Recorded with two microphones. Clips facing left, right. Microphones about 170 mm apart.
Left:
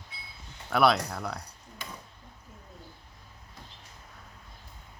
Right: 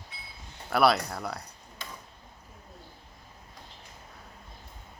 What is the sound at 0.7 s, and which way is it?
Speech, centre (ahead or behind).